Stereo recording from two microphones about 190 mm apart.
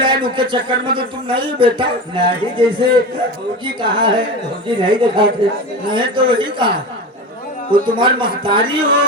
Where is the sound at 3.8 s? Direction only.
25° right (ahead or behind).